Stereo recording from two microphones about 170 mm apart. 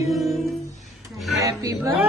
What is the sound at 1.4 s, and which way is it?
Speech, 20° right (ahead or behind).